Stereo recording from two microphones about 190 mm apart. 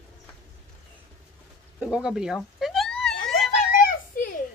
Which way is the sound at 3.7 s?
50° left (ahead or behind).